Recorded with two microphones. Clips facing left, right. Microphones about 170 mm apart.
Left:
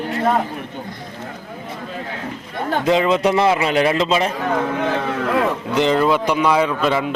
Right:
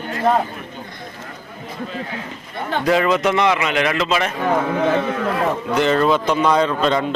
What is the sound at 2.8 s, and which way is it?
A man's voice, 25° left (ahead or behind).